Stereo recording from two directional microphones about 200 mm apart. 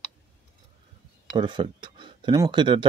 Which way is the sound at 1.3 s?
25° right (ahead or behind).